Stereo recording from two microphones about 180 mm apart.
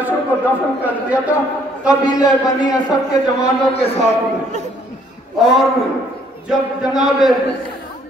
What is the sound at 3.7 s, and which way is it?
Speech, 35° left (ahead or behind).